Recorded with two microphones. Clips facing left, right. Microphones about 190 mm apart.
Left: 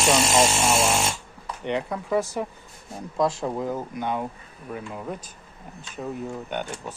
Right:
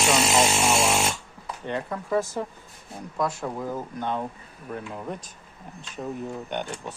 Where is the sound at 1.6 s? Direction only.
15° left (ahead or behind).